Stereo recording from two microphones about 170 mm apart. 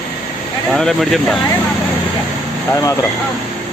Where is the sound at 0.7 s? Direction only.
Centre (ahead or behind).